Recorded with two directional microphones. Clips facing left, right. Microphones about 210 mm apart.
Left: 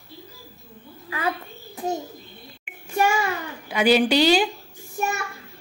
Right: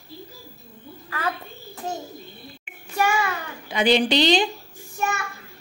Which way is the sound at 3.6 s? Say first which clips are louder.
Left 1 dB; 10° left (ahead or behind).